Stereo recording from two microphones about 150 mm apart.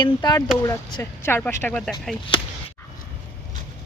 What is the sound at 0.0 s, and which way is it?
Speech, 25° left (ahead or behind).